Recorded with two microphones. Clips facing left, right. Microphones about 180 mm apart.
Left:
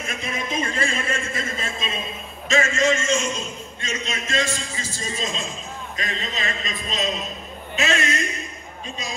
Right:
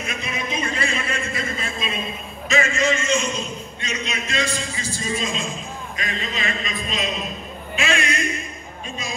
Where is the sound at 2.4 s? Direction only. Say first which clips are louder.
Left 1 dB; 45° left (ahead or behind).